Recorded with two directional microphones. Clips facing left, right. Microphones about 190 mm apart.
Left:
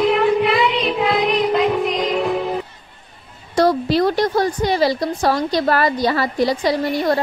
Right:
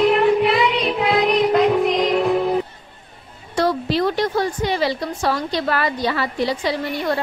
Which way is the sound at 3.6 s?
40° left (ahead or behind).